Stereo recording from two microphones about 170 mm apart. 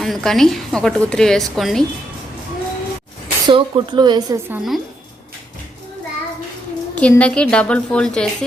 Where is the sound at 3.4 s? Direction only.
25° right (ahead or behind).